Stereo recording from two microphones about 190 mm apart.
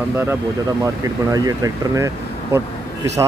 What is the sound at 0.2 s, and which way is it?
Speech, 10° right (ahead or behind).